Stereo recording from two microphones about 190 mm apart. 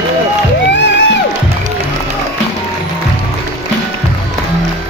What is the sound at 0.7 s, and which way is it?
Music, 70° left (ahead or behind).